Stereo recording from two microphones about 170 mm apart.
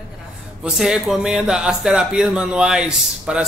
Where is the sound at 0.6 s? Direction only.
5° right (ahead or behind).